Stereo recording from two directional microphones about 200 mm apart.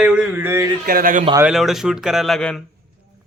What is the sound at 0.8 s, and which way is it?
Speech, 45° right (ahead or behind).